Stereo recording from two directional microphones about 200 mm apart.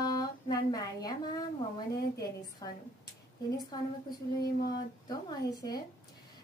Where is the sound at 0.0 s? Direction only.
20° left (ahead or behind).